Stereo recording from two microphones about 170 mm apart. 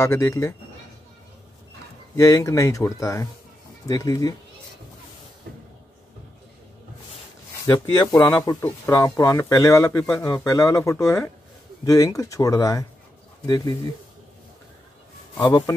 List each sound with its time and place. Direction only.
0.0 s speech: 15° left (ahead or behind)
2.1 s speech: 15° left (ahead or behind)
7.6 s speech: 20° left (ahead or behind)
15.4 s speech: 25° left (ahead or behind)